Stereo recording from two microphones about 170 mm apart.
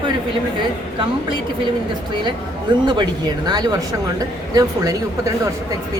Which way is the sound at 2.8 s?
25° right (ahead or behind).